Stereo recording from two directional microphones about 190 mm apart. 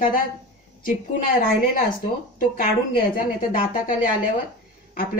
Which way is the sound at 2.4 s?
50° left (ahead or behind).